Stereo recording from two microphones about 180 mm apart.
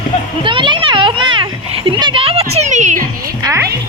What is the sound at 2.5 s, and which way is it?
Music, 40° right (ahead or behind).